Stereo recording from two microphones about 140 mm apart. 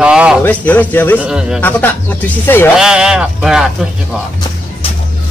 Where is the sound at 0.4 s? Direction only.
10° left (ahead or behind).